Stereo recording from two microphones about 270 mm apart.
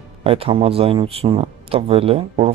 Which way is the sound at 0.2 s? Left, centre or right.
Right.